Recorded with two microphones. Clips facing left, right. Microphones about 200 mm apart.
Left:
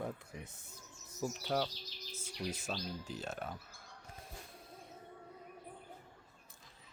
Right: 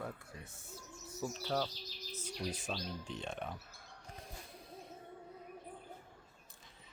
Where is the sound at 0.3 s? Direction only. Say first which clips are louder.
Left 3 dB; 20° left (ahead or behind).